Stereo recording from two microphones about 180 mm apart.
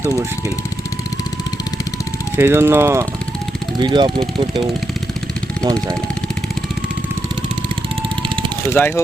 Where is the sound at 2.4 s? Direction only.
15° right (ahead or behind).